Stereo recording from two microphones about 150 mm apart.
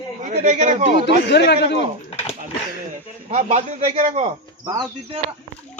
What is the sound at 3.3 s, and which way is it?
A man's voice, 50° right (ahead or behind).